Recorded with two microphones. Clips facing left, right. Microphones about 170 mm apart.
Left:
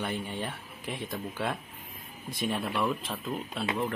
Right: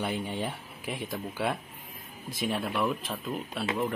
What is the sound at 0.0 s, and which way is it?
Speech, 15° right (ahead or behind).